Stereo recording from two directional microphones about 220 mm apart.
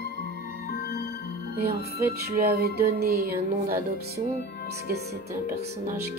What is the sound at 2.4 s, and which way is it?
Music, 45° right (ahead or behind).